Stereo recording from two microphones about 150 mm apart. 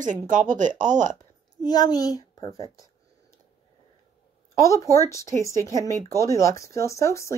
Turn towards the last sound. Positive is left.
turn(degrees=20)  # may be behind; listen again after turning